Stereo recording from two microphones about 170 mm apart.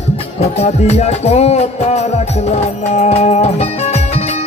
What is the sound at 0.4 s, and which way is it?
Music, 40° left (ahead or behind).